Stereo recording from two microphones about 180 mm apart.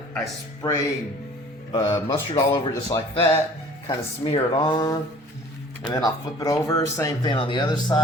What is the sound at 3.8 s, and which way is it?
Speech, 30° left (ahead or behind).